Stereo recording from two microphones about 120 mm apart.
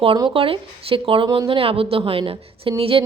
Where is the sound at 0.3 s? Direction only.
50° right (ahead or behind).